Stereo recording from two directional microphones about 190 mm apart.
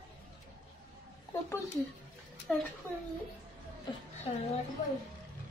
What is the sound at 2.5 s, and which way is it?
Speech, 5° left (ahead or behind).